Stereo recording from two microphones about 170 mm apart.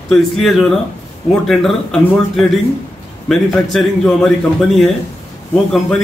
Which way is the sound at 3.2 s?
Centre (ahead or behind).